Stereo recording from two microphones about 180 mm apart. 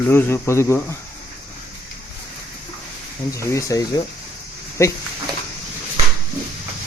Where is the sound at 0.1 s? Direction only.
15° left (ahead or behind).